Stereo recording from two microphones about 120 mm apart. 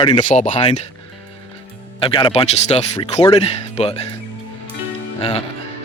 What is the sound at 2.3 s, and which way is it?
Speech, 60° left (ahead or behind).